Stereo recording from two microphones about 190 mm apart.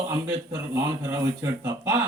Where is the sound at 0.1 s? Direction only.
15° right (ahead or behind).